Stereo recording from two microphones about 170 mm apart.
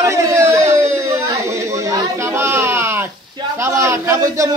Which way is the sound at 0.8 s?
15° right (ahead or behind).